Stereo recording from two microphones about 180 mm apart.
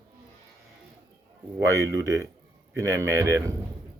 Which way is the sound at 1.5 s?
15° right (ahead or behind).